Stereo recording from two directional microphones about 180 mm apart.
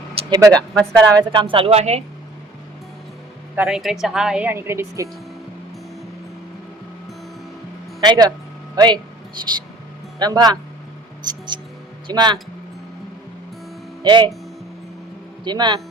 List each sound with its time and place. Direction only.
0.3 s speech: 20° right (ahead or behind)
0.5 s speech: 5° left (ahead or behind)
1.1 s speech: 25° right (ahead or behind)
3.5 s a woman's voice: 5° right (ahead or behind)
8.0 s speech: 20° right (ahead or behind)
10.2 s speech: 20° right (ahead or behind)
14.0 s speech: 25° right (ahead or behind)
15.4 s speech: 25° right (ahead or behind)